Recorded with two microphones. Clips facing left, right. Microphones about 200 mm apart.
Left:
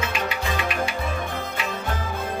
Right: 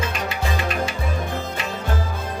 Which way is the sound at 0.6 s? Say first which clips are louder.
Right 1 dB; 40° right (ahead or behind).